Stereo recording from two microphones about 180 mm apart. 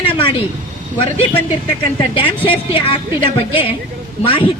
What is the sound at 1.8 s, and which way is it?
Speech, 30° left (ahead or behind).